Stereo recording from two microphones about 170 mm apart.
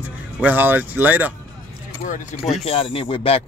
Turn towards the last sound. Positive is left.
turn(degrees=30)  # may be behind; listen again after turning